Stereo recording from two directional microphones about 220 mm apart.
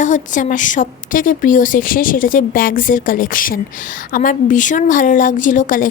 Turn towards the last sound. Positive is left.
turn(degrees=40)  # may be behind; listen again after turning